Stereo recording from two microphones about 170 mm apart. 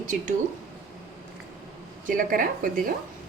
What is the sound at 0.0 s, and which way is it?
Speech, 50° right (ahead or behind).